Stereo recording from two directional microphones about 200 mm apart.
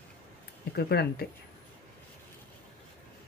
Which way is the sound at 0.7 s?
55° left (ahead or behind).